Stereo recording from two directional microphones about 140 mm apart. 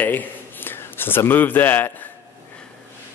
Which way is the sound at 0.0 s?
10° left (ahead or behind).